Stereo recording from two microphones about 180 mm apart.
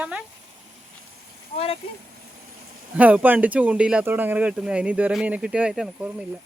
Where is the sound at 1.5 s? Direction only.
30° left (ahead or behind).